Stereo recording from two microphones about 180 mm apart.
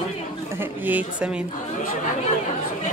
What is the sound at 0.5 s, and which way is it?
Speech, 10° right (ahead or behind).